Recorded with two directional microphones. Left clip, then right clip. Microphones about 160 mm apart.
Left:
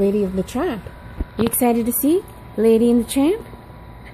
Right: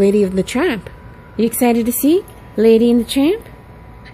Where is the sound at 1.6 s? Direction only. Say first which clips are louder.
Right 3 dB; 15° right (ahead or behind).